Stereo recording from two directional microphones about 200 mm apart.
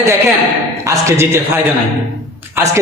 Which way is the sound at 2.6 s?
10° right (ahead or behind).